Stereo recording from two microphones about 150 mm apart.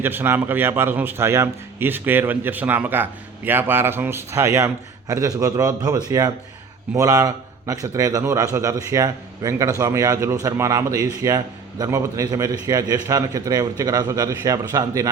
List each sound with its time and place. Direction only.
0.0 s a man's voice: 15° right (ahead or behind)